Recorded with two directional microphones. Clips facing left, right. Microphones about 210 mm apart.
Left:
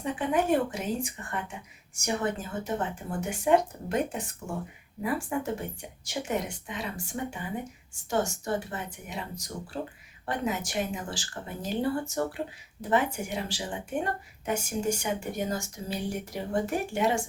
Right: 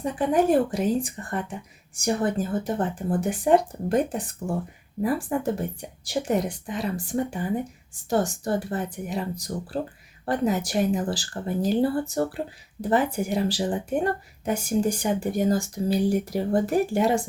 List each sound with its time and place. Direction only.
0.0 s speech: 40° right (ahead or behind)